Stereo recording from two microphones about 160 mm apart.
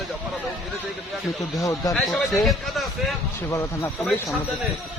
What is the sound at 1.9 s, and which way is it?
Speech, centre (ahead or behind).